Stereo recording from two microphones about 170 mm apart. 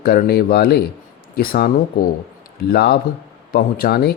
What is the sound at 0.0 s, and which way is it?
Speech, 65° left (ahead or behind).